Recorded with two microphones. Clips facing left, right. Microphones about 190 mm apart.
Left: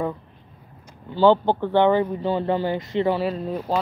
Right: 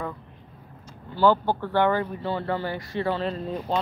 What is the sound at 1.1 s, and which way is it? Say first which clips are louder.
Speech: left 4 dB; 20° left (ahead or behind).